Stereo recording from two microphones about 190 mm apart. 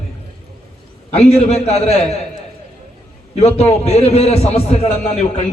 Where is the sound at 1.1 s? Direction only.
35° left (ahead or behind).